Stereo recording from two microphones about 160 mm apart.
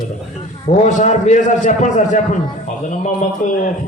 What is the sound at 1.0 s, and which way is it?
A man's voice, 50° left (ahead or behind).